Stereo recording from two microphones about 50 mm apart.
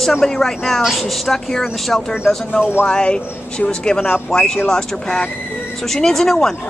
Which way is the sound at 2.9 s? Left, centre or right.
Centre.